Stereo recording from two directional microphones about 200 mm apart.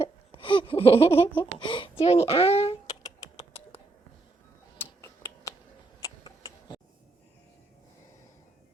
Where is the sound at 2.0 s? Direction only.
30° left (ahead or behind).